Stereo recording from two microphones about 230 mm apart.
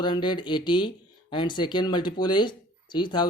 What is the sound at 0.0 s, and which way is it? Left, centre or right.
A man's voice, centre.